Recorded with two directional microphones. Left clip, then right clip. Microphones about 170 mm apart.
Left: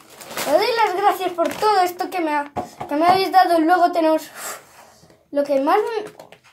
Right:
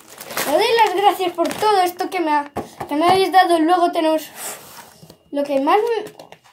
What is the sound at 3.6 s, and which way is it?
A child's voice, 10° right (ahead or behind).